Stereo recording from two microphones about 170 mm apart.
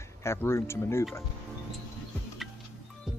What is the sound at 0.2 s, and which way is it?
Speech, 15° left (ahead or behind).